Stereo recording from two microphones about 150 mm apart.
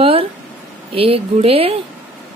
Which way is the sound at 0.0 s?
40° right (ahead or behind).